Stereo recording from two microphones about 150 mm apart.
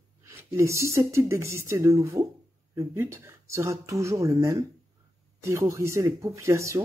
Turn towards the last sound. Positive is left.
turn(degrees=-20)  # may be behind; listen again after turning